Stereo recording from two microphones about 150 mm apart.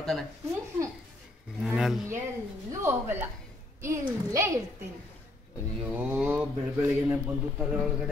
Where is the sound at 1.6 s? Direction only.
Centre (ahead or behind).